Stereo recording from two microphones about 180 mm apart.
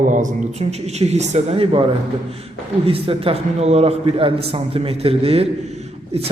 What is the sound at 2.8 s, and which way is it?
A woman's voice, 30° right (ahead or behind).